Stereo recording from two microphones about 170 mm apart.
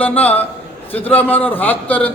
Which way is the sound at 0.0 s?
10° left (ahead or behind).